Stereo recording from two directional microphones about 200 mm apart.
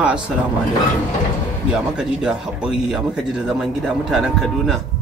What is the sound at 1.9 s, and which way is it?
Speech, 5° right (ahead or behind).